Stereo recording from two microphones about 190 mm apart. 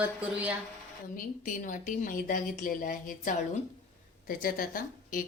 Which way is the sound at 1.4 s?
40° left (ahead or behind).